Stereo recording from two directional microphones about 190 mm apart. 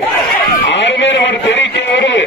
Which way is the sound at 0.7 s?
70° left (ahead or behind).